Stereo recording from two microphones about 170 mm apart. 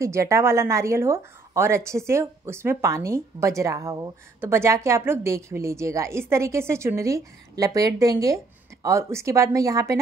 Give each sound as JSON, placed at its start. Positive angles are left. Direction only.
{"t": 0.0, "sound": "speech", "side_deg": -15}